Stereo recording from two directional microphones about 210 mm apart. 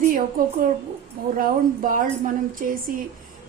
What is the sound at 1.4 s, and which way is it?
A woman's voice, 40° right (ahead or behind).